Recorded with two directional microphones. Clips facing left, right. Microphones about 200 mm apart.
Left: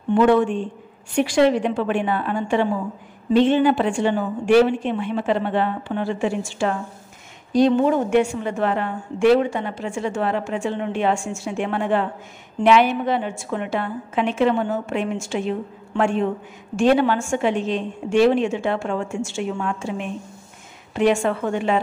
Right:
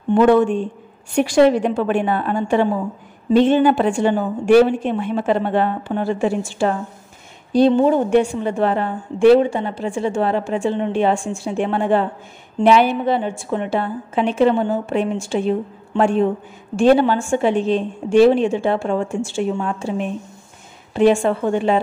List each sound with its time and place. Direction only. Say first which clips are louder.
0.1 s a woman's voice: right 3 dB; 40° right (ahead or behind)